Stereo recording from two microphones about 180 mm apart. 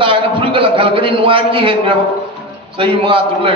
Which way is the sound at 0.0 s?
30° right (ahead or behind).